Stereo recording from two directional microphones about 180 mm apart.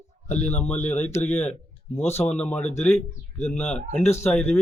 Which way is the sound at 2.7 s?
40° left (ahead or behind).